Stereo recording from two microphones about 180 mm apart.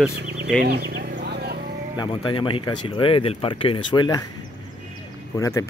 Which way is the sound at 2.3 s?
25° left (ahead or behind).